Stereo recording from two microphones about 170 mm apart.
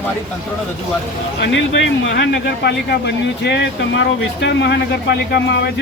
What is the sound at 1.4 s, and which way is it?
Speech, 90° left.